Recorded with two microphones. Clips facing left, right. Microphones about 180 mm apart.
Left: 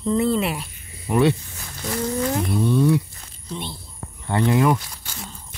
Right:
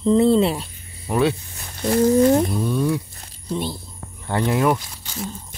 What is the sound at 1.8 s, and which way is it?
Speech, 40° right (ahead or behind).